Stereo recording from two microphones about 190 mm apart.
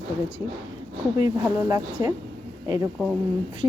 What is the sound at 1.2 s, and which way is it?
Speech, 15° right (ahead or behind).